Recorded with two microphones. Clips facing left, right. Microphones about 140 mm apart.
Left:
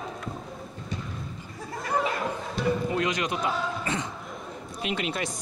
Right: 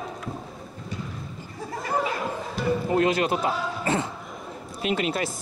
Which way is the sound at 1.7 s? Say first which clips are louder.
Right 1 dB; centre (ahead or behind).